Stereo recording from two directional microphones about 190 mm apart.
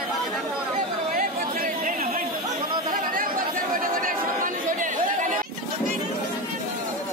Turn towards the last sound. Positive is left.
turn(degrees=-45)  # may be behind; listen again after turning